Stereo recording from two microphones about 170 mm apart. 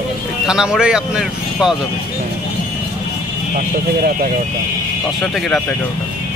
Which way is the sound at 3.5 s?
55° right (ahead or behind).